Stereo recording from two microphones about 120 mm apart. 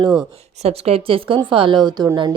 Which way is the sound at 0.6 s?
60° right (ahead or behind).